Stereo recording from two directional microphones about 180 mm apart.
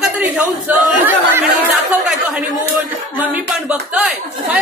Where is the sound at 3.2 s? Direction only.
5° right (ahead or behind).